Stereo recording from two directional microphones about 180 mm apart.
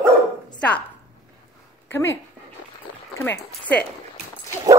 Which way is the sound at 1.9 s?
15° left (ahead or behind).